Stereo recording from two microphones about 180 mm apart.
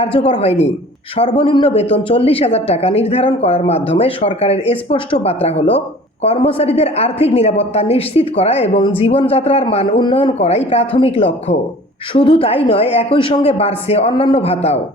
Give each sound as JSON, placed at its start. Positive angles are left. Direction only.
{"t": 0.0, "sound": "a woman's voice", "side_deg": 30}